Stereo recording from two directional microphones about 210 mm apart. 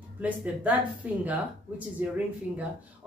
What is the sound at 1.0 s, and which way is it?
Speech, 5° right (ahead or behind).